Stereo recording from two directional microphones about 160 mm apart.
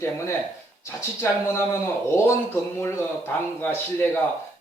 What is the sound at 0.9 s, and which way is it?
Speech, 15° left (ahead or behind).